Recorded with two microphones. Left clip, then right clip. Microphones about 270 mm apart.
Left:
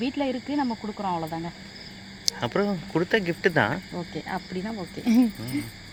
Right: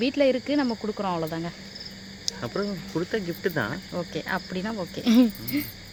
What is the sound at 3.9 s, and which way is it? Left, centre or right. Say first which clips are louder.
Speech: right 3 dB; centre.